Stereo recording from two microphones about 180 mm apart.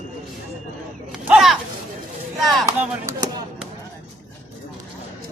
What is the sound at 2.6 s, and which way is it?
Speech, 15° right (ahead or behind).